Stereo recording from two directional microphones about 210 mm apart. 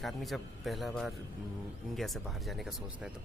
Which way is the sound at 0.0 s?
Centre (ahead or behind).